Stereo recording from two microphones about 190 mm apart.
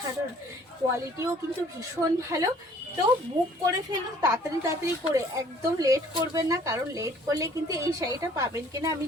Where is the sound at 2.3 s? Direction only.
20° right (ahead or behind).